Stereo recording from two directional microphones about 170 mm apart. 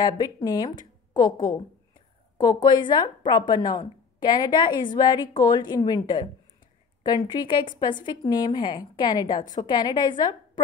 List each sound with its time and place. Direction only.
0.0 s a woman's voice: 25° left (ahead or behind)
7.4 s a woman's voice: 25° left (ahead or behind)